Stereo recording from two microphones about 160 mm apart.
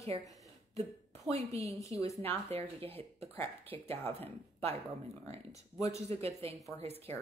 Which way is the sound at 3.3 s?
10° left (ahead or behind).